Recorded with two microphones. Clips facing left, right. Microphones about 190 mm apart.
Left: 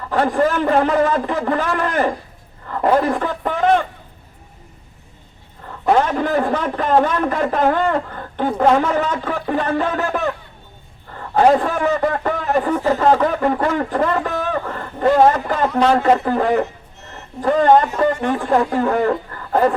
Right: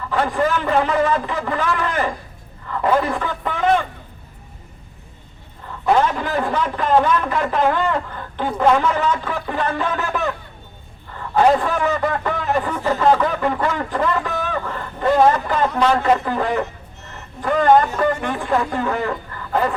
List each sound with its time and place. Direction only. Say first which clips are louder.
0.1 s a man's voice: left 3 dB; 45° left (ahead or behind)
5.8 s a man's voice: left 1 dB; 45° left (ahead or behind)
17.4 s a man's voice: left 1 dB; 30° left (ahead or behind)